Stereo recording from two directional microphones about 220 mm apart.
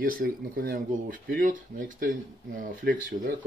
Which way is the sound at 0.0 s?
40° right (ahead or behind).